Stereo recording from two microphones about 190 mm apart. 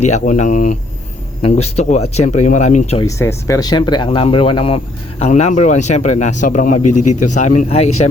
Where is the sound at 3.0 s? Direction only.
15° left (ahead or behind).